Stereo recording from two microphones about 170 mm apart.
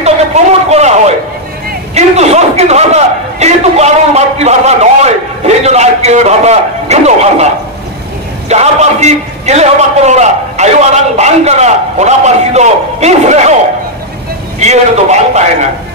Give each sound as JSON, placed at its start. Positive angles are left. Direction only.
{"t": 0.0, "sound": "a sound", "side_deg": -40}
{"t": 2.0, "sound": "a man's voice", "side_deg": -40}
{"t": 8.5, "sound": "a man's voice", "side_deg": -40}
{"t": 14.6, "sound": "a man's voice", "side_deg": -40}